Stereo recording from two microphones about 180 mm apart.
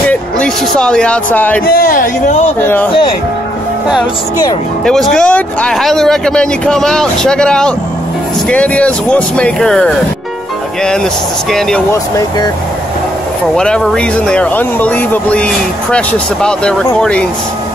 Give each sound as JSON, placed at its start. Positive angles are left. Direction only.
{"t": 0.1, "sound": "speech", "side_deg": 5}
{"t": 1.7, "sound": "speech", "side_deg": 55}
{"t": 2.6, "sound": "speech", "side_deg": 10}
{"t": 4.8, "sound": "speech", "side_deg": 5}
{"t": 13.6, "sound": "speech", "side_deg": 5}